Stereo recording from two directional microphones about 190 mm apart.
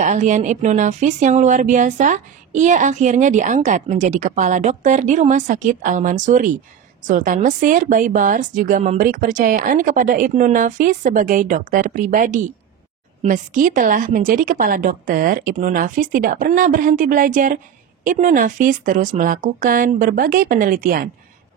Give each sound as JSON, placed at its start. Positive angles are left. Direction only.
{"t": 0.0, "sound": "a woman's voice", "side_deg": -40}